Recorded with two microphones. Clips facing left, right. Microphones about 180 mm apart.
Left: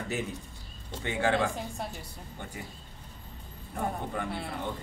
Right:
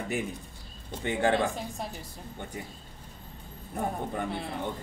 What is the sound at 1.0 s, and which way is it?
Speech, 15° right (ahead or behind).